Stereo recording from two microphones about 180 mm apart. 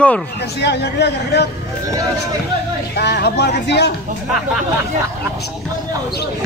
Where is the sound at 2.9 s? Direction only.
65° left (ahead or behind).